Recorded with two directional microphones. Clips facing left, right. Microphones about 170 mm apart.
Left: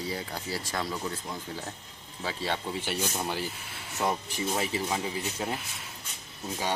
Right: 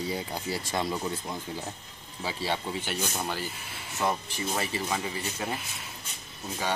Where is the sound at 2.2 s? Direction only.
5° right (ahead or behind).